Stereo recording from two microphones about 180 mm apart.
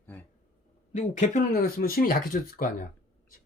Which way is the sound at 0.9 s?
40° left (ahead or behind).